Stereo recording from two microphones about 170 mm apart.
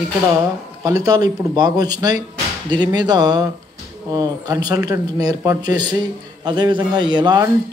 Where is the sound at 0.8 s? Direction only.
20° right (ahead or behind).